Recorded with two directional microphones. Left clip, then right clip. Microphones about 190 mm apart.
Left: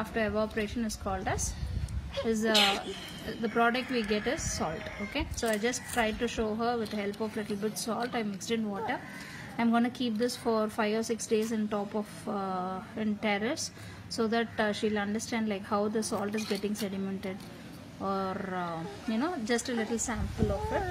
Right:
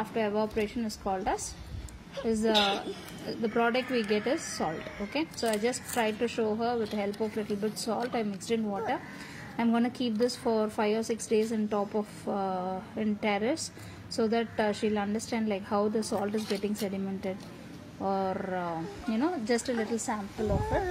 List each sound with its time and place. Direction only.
0.1 s a woman's voice: 5° right (ahead or behind)